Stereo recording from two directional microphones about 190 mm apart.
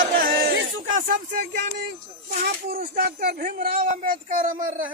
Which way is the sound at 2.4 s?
55° right (ahead or behind).